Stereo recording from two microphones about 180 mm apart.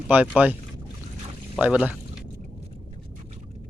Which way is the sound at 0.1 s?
10° right (ahead or behind).